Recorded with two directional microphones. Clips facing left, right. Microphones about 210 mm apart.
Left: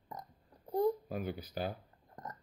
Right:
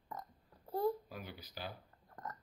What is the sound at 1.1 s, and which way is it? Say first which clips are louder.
Speech: left 10 dB; 50° left (ahead or behind).